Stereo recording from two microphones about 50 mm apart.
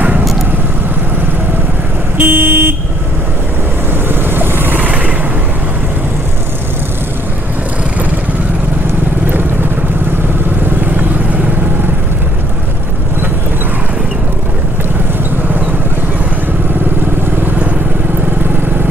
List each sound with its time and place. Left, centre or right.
2.1 s vehicle: right
4.1 s vehicle: right